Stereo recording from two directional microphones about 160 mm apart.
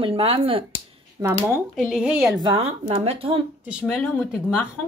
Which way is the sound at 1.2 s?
15° right (ahead or behind).